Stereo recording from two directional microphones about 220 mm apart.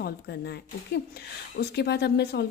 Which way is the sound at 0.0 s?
45° left (ahead or behind).